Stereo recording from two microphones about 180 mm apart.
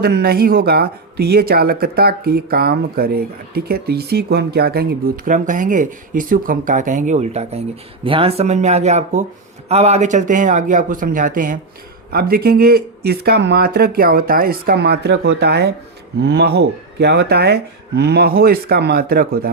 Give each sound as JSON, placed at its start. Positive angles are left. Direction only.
{"t": 0.0, "sound": "speech", "side_deg": -60}